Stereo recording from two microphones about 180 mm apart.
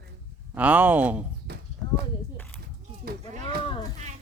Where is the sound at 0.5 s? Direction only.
10° right (ahead or behind).